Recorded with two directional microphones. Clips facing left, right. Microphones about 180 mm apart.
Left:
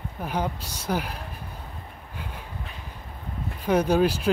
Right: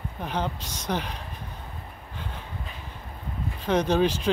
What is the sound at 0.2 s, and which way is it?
Speech, 10° left (ahead or behind).